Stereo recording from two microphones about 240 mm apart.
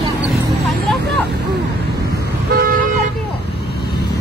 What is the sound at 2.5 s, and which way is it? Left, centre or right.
Toot, right.